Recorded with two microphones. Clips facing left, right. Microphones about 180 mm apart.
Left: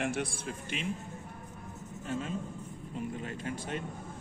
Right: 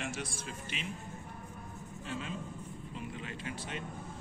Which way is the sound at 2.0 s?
45° left (ahead or behind).